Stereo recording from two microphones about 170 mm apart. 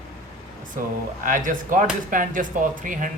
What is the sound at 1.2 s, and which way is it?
Speech, 50° right (ahead or behind).